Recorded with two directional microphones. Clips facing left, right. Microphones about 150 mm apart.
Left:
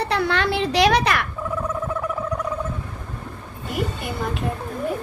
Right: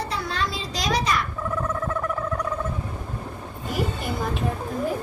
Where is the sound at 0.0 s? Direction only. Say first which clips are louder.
Left 6 dB; 65° left (ahead or behind).